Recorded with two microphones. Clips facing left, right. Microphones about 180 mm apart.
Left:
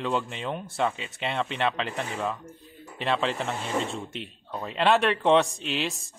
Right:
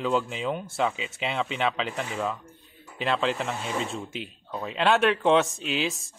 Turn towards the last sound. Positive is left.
turn(degrees=0)  # may be behind; listen again after turning